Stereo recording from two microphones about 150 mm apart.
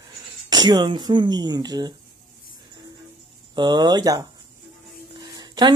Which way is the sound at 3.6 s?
30° right (ahead or behind).